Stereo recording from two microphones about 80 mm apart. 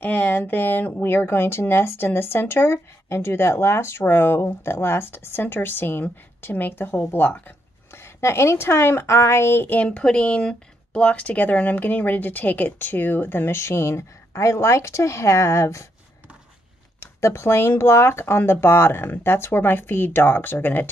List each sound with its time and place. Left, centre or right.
0.0 s speech: left
17.0 s speech: left